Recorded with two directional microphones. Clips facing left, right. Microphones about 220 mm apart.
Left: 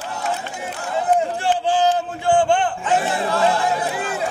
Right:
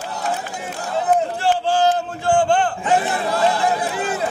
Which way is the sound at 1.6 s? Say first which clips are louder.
Even; 15° left (ahead or behind).